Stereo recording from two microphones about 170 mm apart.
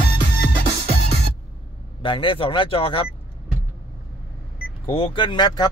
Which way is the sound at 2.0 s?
30° left (ahead or behind).